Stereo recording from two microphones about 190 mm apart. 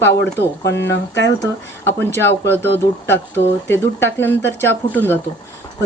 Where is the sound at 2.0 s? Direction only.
10° left (ahead or behind).